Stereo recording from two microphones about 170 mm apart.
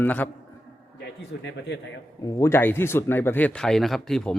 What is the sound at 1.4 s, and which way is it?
Speech, 90° left.